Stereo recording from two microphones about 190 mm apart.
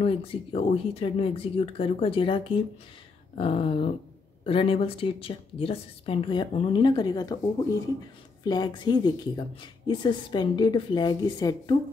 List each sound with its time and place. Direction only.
0.0 s speech: 30° left (ahead or behind)
3.3 s a sound: 30° left (ahead or behind)
4.5 s speech: 30° left (ahead or behind)
8.5 s speech: 20° left (ahead or behind)